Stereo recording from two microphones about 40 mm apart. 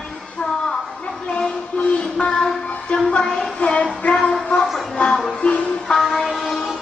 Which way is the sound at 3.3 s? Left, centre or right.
Centre.